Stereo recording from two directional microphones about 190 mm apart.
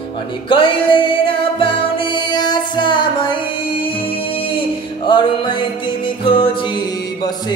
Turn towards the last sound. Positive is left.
turn(degrees=25)  # may be behind; listen again after turning